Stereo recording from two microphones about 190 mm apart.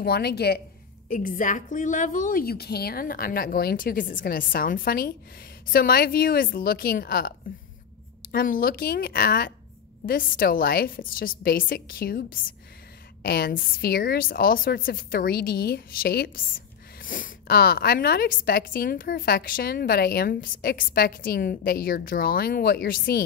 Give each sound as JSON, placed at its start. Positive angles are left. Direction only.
{"t": 0.0, "sound": "a woman's voice", "side_deg": 55}
{"t": 1.0, "sound": "a woman's voice", "side_deg": 45}